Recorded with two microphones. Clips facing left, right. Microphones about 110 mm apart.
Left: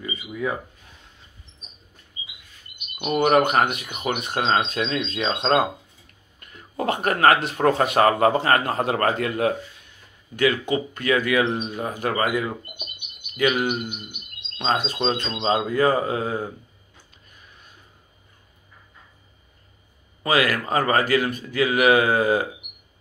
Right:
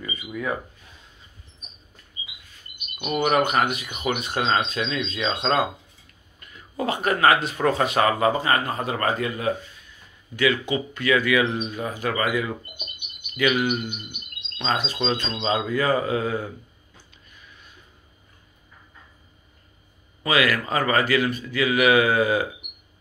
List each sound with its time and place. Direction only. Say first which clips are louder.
0.0 s speech: left 2 dB; 20° left (ahead or behind)
3.0 s speech: left 3 dB; 45° left (ahead or behind)
6.4 s a sound: left 2 dB; 55° left (ahead or behind)
7.2 s speech: left 2 dB; 55° left (ahead or behind)
8.5 s a man's voice: left 3 dB; 70° left (ahead or behind)
8.9 s speech: left 2 dB; 60° left (ahead or behind)
10.4 s speech: left 1 dB; 50° left (ahead or behind)
13.3 s speech: even; 40° left (ahead or behind)
20.2 s speech: left 1 dB; 45° left (ahead or behind)